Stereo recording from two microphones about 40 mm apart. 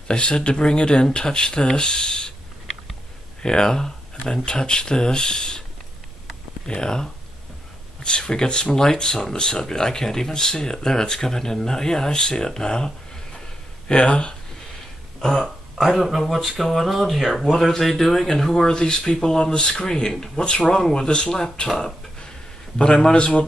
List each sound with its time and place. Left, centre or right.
0.1 s speech: left
3.4 s speech: centre
6.7 s speech: centre
8.3 s speech: centre
15.1 s speech: centre
21.6 s speech: centre
22.8 s speech: centre